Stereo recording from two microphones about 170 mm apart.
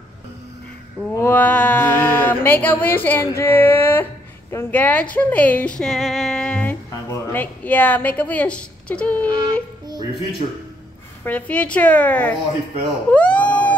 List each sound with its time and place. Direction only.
1.1 s a sound: 15° left (ahead or behind)
5.8 s music: centre (ahead or behind)
7.1 s a woman's voice: 10° left (ahead or behind)
9.3 s music: 25° right (ahead or behind)
11.2 s a woman's voice: 10° left (ahead or behind)
13.1 s a sound: 10° left (ahead or behind)